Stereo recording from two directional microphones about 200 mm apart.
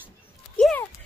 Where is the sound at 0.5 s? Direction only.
5° left (ahead or behind).